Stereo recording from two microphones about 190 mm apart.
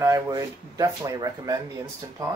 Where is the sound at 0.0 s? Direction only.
15° right (ahead or behind).